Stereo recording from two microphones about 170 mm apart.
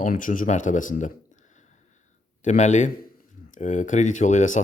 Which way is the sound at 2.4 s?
45° left (ahead or behind).